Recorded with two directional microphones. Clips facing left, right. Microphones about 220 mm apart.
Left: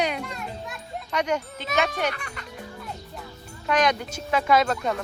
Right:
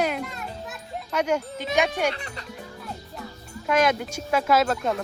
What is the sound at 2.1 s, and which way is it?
Speech, 25° right (ahead or behind).